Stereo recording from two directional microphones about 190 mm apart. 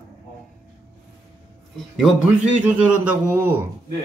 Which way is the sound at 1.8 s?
Centre (ahead or behind).